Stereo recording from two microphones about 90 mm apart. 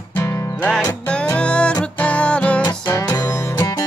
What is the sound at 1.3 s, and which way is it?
Music, 10° left (ahead or behind).